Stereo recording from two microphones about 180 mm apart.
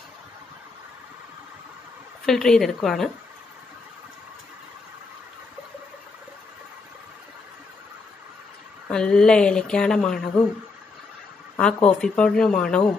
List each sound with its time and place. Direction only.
2.2 s speech: 5° left (ahead or behind)
8.8 s speech: 5° left (ahead or behind)
11.5 s speech: 5° left (ahead or behind)